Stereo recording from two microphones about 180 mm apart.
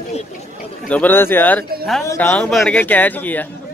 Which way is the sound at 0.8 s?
10° left (ahead or behind).